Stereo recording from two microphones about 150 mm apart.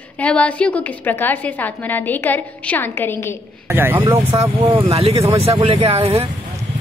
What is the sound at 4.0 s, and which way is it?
Speech, 30° right (ahead or behind).